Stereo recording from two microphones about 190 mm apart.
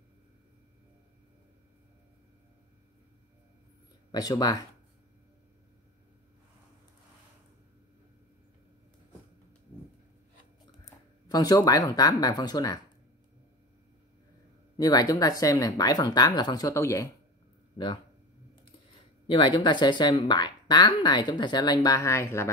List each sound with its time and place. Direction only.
4.1 s speech: 20° left (ahead or behind)
10.9 s speech: 20° left (ahead or behind)
14.8 s speech: 20° left (ahead or behind)
19.2 s speech: 25° left (ahead or behind)